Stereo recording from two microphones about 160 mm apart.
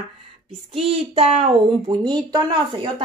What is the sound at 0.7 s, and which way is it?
Speech, 40° right (ahead or behind).